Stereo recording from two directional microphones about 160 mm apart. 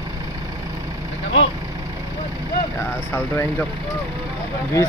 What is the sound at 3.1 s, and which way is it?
Speech, 10° left (ahead or behind).